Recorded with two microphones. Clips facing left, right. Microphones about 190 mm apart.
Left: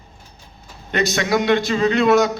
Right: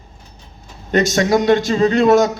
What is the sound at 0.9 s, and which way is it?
A man's voice, 45° right (ahead or behind).